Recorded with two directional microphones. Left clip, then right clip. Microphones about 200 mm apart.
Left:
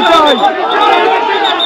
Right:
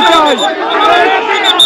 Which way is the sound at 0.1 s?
Centre (ahead or behind).